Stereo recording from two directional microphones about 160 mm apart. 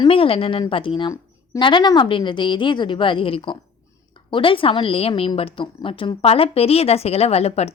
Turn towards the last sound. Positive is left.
turn(degrees=40)  # may be behind; listen again after turning